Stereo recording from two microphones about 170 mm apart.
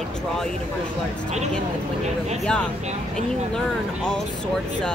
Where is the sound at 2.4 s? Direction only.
5° left (ahead or behind).